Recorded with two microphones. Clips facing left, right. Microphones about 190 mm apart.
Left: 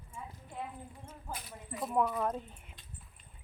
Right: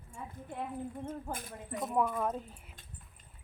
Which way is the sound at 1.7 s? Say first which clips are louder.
Even; centre (ahead or behind).